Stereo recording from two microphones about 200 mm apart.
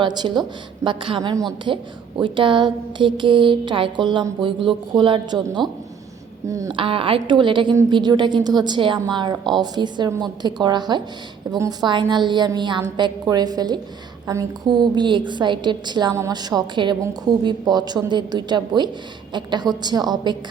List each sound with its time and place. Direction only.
0.0 s speech: 20° right (ahead or behind)